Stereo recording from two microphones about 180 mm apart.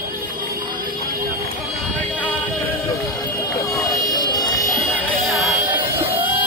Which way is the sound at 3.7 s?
20° left (ahead or behind).